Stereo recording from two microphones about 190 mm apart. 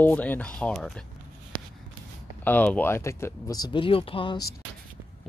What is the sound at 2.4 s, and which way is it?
Speech, 10° left (ahead or behind).